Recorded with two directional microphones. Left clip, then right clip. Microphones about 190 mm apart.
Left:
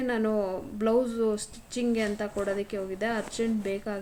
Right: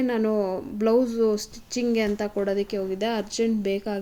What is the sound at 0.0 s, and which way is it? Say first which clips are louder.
A woman's voice: right 4 dB; 35° right (ahead or behind).